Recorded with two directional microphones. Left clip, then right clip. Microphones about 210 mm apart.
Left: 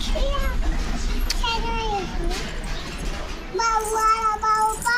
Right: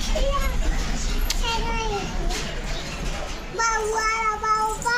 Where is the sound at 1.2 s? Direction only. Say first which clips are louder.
Left 1 dB; 10° right (ahead or behind).